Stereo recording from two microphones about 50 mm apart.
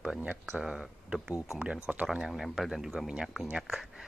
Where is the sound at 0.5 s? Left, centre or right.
Centre.